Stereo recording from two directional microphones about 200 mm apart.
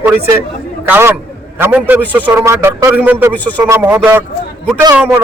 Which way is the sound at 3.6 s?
15° right (ahead or behind).